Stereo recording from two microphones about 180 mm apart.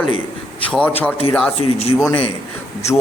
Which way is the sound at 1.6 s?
35° left (ahead or behind).